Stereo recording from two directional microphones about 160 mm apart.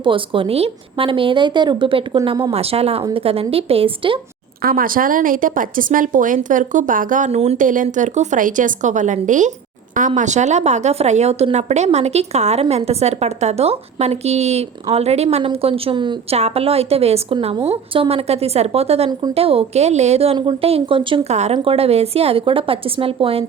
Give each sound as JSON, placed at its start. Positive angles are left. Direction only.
{"t": 0.0, "sound": "a woman's voice", "side_deg": -30}
{"t": 4.6, "sound": "a woman's voice", "side_deg": -65}